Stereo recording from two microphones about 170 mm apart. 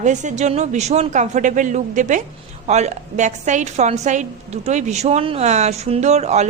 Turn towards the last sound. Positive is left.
turn(degrees=-40)  # may be behind; listen again after turning